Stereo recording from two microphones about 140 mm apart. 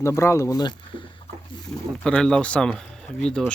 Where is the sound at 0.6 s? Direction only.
30° left (ahead or behind).